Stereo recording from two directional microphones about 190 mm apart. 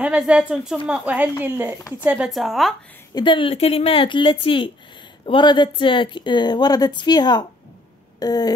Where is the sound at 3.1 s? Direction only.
25° left (ahead or behind).